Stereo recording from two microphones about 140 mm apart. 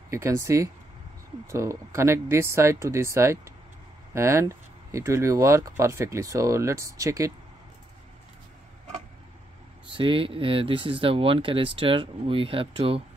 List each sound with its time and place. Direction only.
0.1 s speech: 20° right (ahead or behind)
9.9 s speech: 40° right (ahead or behind)